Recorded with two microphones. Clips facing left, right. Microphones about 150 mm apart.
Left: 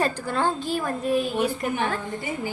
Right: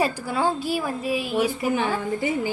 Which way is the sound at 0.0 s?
10° right (ahead or behind).